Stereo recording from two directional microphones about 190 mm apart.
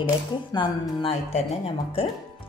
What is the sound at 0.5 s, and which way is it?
Speech, 25° left (ahead or behind).